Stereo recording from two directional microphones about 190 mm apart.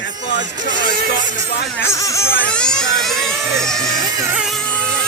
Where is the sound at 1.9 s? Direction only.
15° left (ahead or behind).